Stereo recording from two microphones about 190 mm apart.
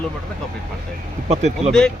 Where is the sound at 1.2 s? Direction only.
35° right (ahead or behind).